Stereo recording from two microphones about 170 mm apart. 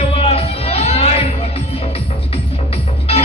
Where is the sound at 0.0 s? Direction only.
35° left (ahead or behind).